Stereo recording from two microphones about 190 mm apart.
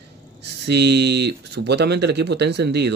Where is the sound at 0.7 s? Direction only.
60° right (ahead or behind).